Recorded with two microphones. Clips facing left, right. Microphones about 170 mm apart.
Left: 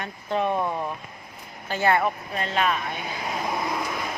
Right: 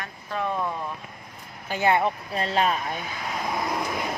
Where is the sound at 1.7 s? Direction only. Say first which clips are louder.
Even; 15° right (ahead or behind); by 2.8 s 35° right (ahead or behind).